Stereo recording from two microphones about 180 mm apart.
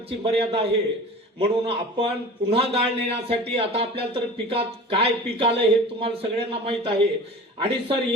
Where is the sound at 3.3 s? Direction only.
30° right (ahead or behind).